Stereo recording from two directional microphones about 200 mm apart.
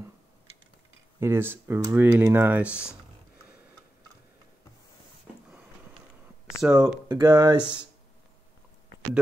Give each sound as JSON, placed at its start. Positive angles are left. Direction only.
{"t": 1.2, "sound": "speech", "side_deg": -10}
{"t": 6.6, "sound": "speech", "side_deg": -5}
{"t": 7.1, "sound": "speech", "side_deg": -20}